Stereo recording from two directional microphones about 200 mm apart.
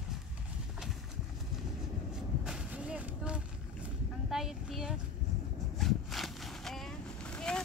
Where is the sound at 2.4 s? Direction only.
5° right (ahead or behind).